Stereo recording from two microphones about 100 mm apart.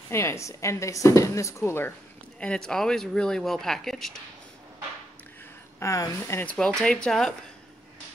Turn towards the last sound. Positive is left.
turn(degrees=5)  # may be behind; listen again after turning